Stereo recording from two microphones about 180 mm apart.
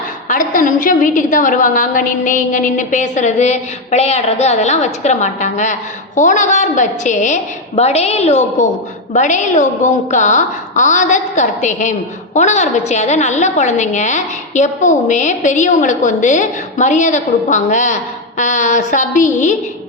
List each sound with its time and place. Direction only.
0.3 s a woman's voice: 45° left (ahead or behind)